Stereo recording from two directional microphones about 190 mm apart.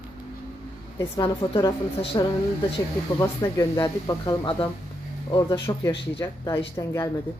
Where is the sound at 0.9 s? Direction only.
20° left (ahead or behind).